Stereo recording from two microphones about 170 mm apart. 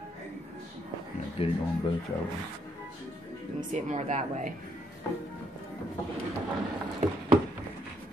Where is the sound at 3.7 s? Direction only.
45° right (ahead or behind).